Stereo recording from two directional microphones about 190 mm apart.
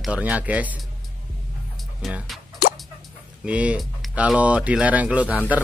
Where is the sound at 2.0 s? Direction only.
5° right (ahead or behind).